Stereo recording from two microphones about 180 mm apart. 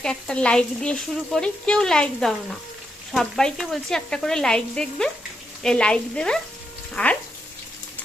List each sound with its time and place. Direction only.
0.0 s speech: 5° left (ahead or behind)